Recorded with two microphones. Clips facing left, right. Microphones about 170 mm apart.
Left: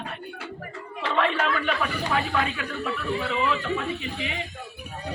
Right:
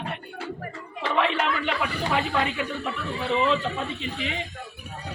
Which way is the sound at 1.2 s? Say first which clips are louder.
Left 1 dB; 15° right (ahead or behind).